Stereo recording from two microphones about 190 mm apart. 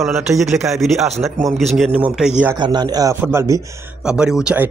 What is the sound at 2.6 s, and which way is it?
Speech, 25° right (ahead or behind).